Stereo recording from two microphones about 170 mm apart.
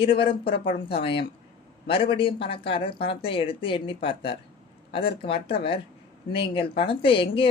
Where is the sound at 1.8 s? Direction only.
30° left (ahead or behind).